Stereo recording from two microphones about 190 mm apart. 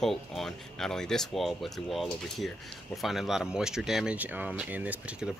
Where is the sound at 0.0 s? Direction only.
Centre (ahead or behind).